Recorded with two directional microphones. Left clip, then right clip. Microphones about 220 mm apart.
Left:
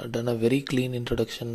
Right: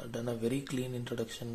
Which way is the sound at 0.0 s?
35° left (ahead or behind).